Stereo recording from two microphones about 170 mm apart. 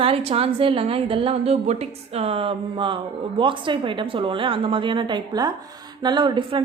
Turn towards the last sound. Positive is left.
turn(degrees=-30)  # may be behind; listen again after turning